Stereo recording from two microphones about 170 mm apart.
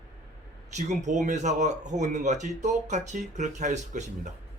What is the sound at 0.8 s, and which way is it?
Speech, 45° right (ahead or behind).